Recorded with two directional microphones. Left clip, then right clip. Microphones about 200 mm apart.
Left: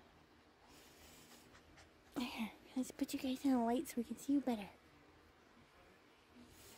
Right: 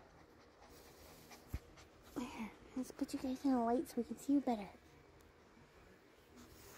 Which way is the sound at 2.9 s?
25° left (ahead or behind).